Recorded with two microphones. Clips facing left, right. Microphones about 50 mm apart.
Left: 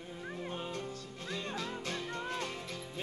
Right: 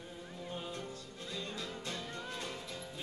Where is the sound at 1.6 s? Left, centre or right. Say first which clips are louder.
Left 3 dB; left.